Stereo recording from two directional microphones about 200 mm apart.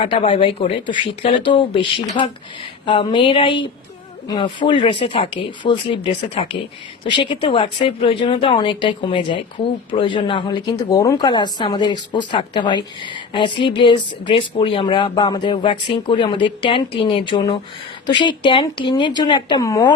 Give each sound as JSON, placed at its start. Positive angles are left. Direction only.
{"t": 0.0, "sound": "speech", "side_deg": 30}